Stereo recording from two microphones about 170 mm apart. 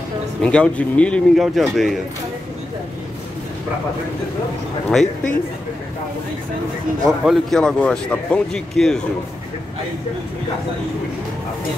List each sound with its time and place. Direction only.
0.4 s speech: 5° left (ahead or behind)
5.0 s speech: 50° left (ahead or behind)
7.1 s speech: centre (ahead or behind)